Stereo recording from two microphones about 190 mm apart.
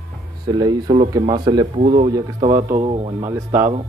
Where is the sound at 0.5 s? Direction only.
20° right (ahead or behind).